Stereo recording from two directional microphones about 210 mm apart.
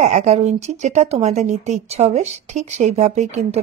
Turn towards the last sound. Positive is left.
turn(degrees=-30)  # may be behind; listen again after turning